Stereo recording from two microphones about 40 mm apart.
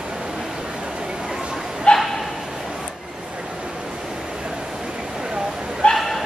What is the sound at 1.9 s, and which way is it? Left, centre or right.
Bow-wow, left.